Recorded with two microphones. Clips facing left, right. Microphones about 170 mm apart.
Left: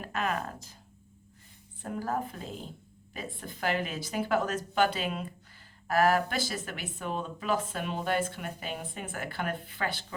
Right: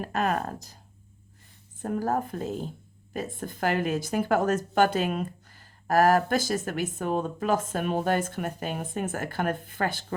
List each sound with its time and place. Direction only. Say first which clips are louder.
0.0 s speech: right 5 dB; 40° right (ahead or behind)
1.8 s speech: right 5 dB; 45° right (ahead or behind)